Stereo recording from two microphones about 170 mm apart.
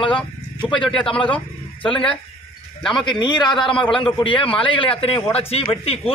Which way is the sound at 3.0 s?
25° left (ahead or behind).